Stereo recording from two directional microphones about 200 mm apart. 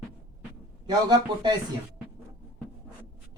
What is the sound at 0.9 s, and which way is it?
Speech, 20° right (ahead or behind).